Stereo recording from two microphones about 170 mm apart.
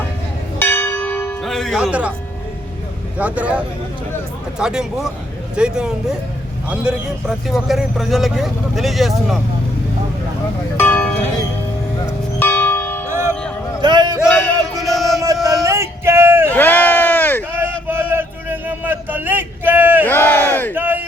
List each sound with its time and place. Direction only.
0.6 s church bell: 10° left (ahead or behind)
1.4 s music: centre (ahead or behind)
3.2 s a man's voice: 10° right (ahead or behind)
10.8 s music: 10° left (ahead or behind)
12.4 s church bell: 10° left (ahead or behind)
13.1 s music: 15° right (ahead or behind)
13.8 s music: 25° right (ahead or behind)
14.8 s chant: centre (ahead or behind)
15.4 s music: centre (ahead or behind)
15.6 s a sound: 15° right (ahead or behind)
16.5 s a sound: 10° left (ahead or behind)
17.8 s a sound: 10° right (ahead or behind)
20.1 s crowd: 10° left (ahead or behind)
20.7 s a sound: 10° right (ahead or behind)